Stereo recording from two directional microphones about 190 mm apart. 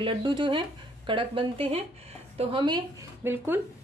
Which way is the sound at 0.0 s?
25° right (ahead or behind).